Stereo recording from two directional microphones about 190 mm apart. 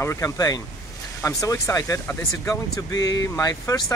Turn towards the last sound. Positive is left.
turn(degrees=20)  # may be behind; listen again after turning